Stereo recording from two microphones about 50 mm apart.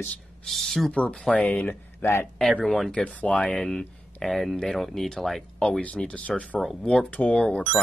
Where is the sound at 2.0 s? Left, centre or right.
Left.